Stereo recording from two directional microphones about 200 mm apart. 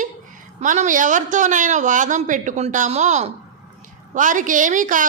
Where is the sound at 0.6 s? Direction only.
40° right (ahead or behind).